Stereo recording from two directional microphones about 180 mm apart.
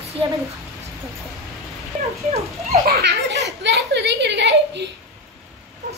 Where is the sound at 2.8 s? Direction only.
60° right (ahead or behind).